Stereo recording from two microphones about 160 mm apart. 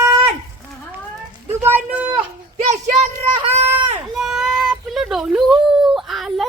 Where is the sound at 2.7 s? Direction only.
40° right (ahead or behind).